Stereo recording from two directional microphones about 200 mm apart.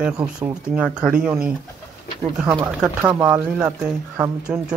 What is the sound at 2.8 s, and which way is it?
Speech, 10° right (ahead or behind).